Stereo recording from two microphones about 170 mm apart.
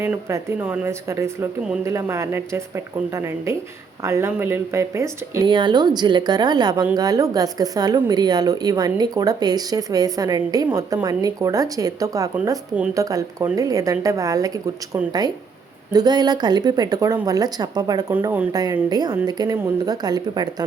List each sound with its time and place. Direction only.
0.0 s speech: 15° right (ahead or behind)
5.5 s speech: 25° right (ahead or behind)
15.9 s speech: 25° right (ahead or behind)
18.1 s speech: 10° right (ahead or behind)